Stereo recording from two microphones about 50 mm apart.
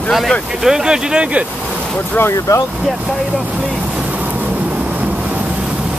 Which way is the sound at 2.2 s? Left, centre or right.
Left.